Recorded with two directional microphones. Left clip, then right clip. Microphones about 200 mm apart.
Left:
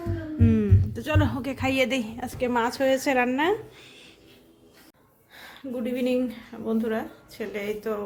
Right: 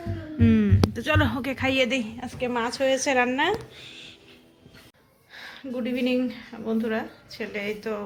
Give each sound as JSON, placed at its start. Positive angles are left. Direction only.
{"t": 0.3, "sound": "speech", "side_deg": 0}
{"t": 1.7, "sound": "a woman's voice", "side_deg": 15}
{"t": 5.3, "sound": "speech", "side_deg": 10}